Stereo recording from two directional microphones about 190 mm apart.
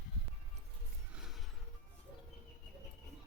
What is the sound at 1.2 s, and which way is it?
Music, centre (ahead or behind).